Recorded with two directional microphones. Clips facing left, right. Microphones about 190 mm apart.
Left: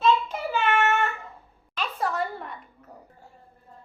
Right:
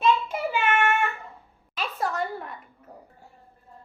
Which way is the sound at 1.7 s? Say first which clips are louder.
Even; 5° right (ahead or behind).